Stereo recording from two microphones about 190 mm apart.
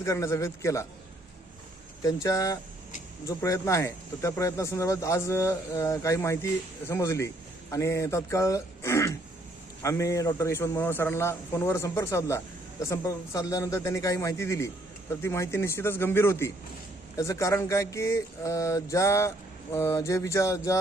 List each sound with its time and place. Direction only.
0.0 s speech: 15° left (ahead or behind)
2.2 s speech: 15° left (ahead or behind)